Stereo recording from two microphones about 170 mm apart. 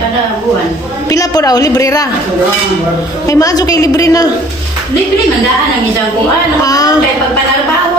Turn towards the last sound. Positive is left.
turn(degrees=20)  # may be behind; listen again after turning